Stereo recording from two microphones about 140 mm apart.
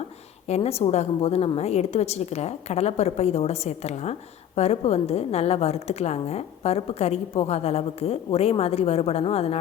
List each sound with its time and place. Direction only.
0.4 s a woman's voice: 50° left (ahead or behind)